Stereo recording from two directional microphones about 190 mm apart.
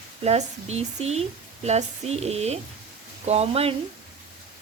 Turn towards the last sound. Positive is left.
turn(degrees=-30)  # may be behind; listen again after turning